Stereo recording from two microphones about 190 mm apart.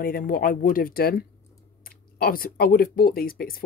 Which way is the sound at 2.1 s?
50° left (ahead or behind).